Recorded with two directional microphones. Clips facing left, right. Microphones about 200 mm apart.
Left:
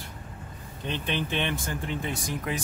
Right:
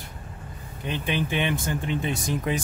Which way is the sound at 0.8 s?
10° right (ahead or behind).